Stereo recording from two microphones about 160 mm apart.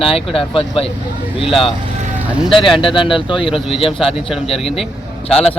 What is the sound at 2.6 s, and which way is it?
Speech, 30° left (ahead or behind).